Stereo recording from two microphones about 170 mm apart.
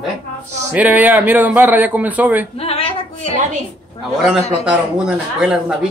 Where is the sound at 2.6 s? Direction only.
35° left (ahead or behind).